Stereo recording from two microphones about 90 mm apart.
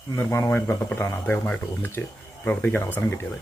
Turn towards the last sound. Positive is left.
turn(degrees=25)  # may be behind; listen again after turning